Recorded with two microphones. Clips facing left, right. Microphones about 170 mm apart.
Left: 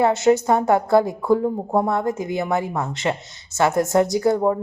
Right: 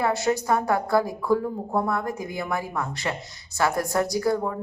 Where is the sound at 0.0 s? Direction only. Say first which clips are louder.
Left 7 dB; 20° left (ahead or behind).